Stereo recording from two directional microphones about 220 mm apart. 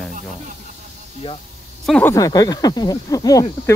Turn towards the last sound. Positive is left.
turn(degrees=15)  # may be behind; listen again after turning